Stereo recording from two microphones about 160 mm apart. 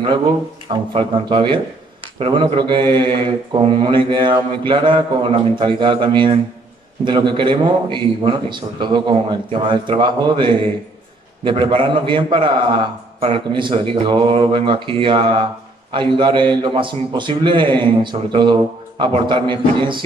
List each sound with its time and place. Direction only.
0.7 s mantra: 30° right (ahead or behind)